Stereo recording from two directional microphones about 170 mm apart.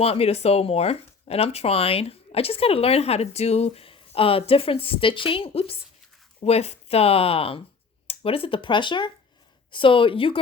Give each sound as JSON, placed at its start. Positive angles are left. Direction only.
{"t": 0.0, "sound": "speech", "side_deg": 35}